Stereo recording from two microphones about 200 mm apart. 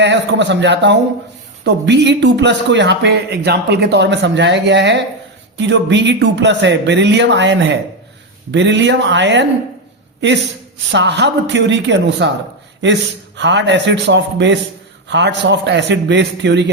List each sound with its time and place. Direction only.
0.0 s a man's voice: 60° right (ahead or behind)